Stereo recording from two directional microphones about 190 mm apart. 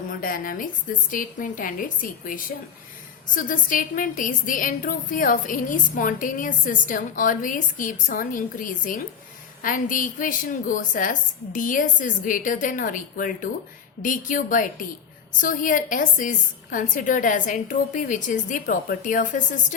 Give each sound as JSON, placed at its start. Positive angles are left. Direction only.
{"t": 0.1, "sound": "a woman's voice", "side_deg": 45}